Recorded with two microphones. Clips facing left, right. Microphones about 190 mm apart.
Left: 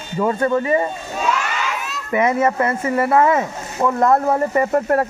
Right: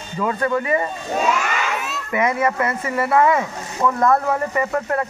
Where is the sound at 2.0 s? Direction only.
30° left (ahead or behind).